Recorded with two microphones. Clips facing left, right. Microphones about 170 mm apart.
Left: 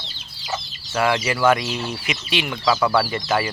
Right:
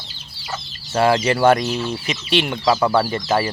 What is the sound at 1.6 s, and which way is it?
Speech, 10° left (ahead or behind).